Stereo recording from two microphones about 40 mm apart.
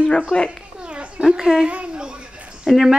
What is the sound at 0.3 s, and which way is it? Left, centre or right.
Speech, centre.